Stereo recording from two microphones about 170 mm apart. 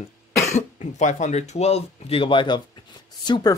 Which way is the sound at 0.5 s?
45° left (ahead or behind).